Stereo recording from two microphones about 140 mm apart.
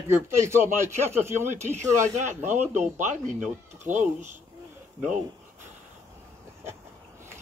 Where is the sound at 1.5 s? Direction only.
55° right (ahead or behind).